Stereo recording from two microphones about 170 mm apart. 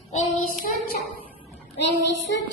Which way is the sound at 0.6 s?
60° left (ahead or behind).